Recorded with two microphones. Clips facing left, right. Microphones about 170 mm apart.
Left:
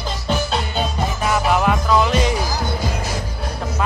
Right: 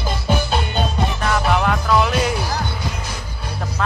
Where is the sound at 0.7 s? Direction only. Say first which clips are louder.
Right 1 dB; 5° left (ahead or behind).